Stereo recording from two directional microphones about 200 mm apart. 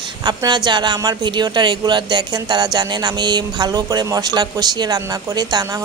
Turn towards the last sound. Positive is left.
turn(degrees=-20)  # may be behind; listen again after turning